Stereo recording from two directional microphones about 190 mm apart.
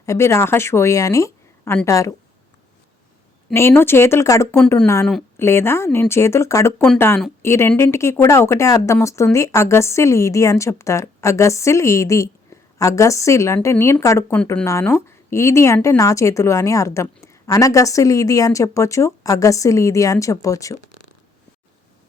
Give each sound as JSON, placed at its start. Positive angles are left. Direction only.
{"t": 0.0, "sound": "speech", "side_deg": 15}
{"t": 3.5, "sound": "speech", "side_deg": 15}